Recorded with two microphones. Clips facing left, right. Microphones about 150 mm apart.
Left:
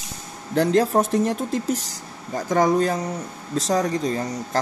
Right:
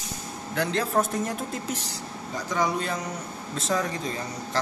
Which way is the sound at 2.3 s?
50° left (ahead or behind).